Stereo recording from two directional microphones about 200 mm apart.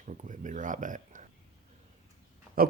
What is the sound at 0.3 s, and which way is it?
Speech, 40° right (ahead or behind).